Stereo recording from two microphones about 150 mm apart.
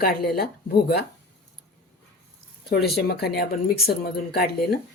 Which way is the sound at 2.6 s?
90° left.